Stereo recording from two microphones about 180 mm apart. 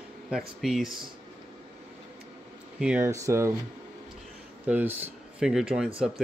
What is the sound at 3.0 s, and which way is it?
Speech, 15° right (ahead or behind).